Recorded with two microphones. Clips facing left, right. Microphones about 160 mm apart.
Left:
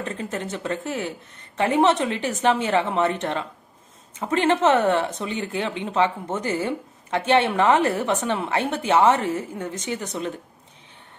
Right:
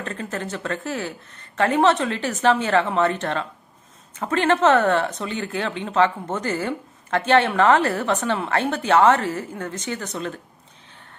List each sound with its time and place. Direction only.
0.0 s a woman's voice: 15° left (ahead or behind)